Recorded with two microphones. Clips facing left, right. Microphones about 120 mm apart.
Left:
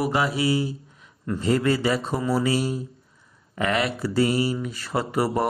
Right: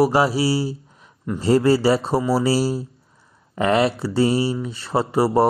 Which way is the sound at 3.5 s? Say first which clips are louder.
Right 6 dB; 30° right (ahead or behind).